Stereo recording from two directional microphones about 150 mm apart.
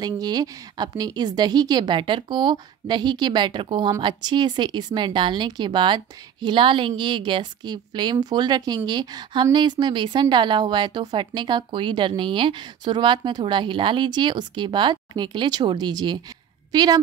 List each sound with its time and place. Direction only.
0.0 s a woman's voice: 25° right (ahead or behind)